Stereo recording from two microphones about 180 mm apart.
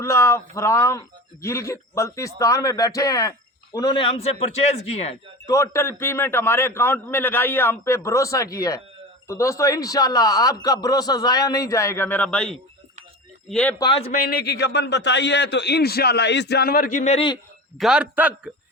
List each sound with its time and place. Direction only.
0.0 s a man's voice: 15° left (ahead or behind); by 5.1 s 35° left (ahead or behind)
5.5 s a man's voice: 15° left (ahead or behind)
13.7 s a man's voice: 25° left (ahead or behind)
14.1 s a man's voice: 55° left (ahead or behind)
14.6 s a man's voice: 70° left (ahead or behind); by 17.2 s 40° left (ahead or behind)
17.7 s a man's voice: 5° right (ahead or behind)